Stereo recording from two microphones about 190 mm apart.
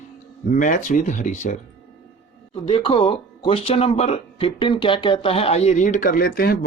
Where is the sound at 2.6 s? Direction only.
30° left (ahead or behind).